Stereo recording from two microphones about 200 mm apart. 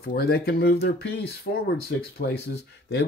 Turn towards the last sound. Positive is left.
turn(degrees=55)  # may be behind; listen again after turning